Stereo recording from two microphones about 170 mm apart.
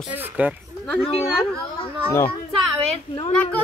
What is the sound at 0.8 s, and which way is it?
Speech, 5° left (ahead or behind).